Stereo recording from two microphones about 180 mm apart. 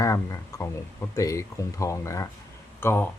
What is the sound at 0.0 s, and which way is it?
Speech, 20° left (ahead or behind).